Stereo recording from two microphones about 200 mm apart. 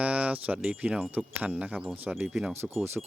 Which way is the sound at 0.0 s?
5° right (ahead or behind).